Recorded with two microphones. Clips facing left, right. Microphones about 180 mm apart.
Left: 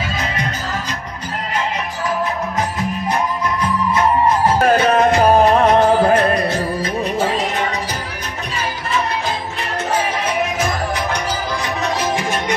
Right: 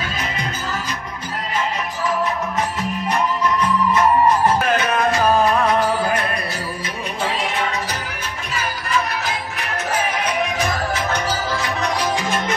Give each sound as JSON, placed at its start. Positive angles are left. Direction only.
{"t": 4.5, "sound": "music", "side_deg": 35}
{"t": 11.8, "sound": "music", "side_deg": 20}